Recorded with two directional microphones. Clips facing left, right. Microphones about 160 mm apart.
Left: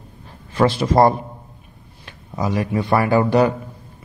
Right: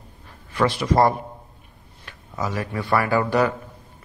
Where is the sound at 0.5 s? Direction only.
30° left (ahead or behind).